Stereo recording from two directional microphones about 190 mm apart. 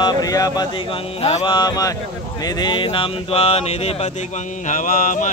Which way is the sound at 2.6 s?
25° left (ahead or behind).